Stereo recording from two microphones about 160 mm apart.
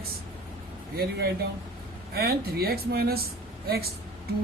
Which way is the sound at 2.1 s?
75° right (ahead or behind).